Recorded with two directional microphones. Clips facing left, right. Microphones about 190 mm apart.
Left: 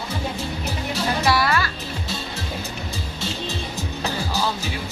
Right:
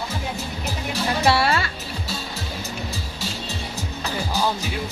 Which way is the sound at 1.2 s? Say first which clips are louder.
Right 2 dB; 25° right (ahead or behind).